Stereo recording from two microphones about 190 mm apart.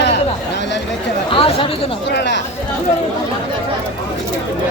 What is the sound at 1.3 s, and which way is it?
Speech, 30° left (ahead or behind).